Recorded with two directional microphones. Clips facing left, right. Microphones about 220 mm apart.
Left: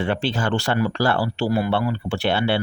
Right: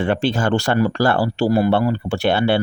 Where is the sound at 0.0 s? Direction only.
50° right (ahead or behind).